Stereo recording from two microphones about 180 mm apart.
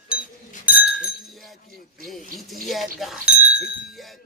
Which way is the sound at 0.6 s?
5° right (ahead or behind).